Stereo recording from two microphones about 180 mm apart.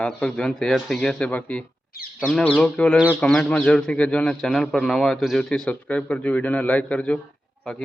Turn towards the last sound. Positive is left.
turn(degrees=5)  # may be behind; listen again after turning